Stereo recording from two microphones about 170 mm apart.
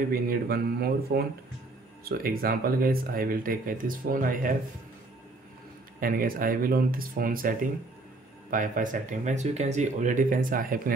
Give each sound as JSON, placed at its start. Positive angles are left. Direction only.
{"t": 0.1, "sound": "speech", "side_deg": -65}
{"t": 5.9, "sound": "speech", "side_deg": -55}